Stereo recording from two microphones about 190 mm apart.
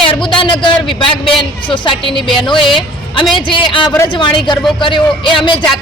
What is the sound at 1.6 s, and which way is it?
A man's voice, 25° left (ahead or behind).